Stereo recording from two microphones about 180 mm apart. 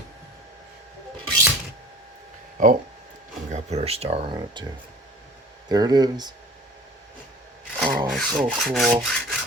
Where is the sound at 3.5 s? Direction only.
35° right (ahead or behind).